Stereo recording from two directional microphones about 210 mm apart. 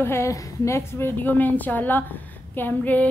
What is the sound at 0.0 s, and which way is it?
A woman's voice, 10° left (ahead or behind).